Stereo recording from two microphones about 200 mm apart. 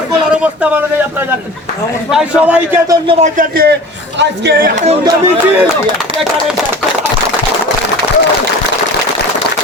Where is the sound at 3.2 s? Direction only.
40° right (ahead or behind).